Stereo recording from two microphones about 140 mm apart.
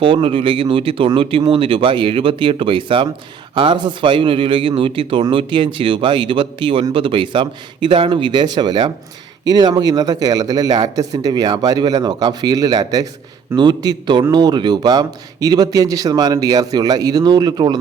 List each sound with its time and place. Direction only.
0.0 s a man's voice: 40° right (ahead or behind)